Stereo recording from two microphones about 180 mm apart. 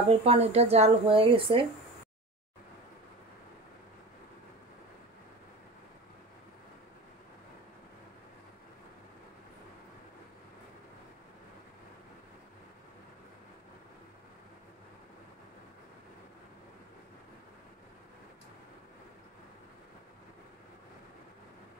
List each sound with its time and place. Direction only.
0.1 s speech: 35° right (ahead or behind)